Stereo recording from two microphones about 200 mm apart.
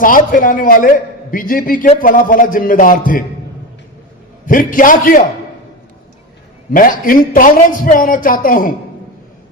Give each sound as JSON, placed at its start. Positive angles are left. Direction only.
{"t": 0.0, "sound": "a man's voice", "side_deg": 45}
{"t": 4.4, "sound": "a man's voice", "side_deg": 40}
{"t": 6.7, "sound": "a man's voice", "side_deg": 45}